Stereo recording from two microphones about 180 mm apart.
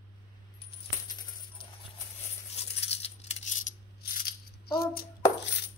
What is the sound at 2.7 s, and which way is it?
Coin, 35° left (ahead or behind).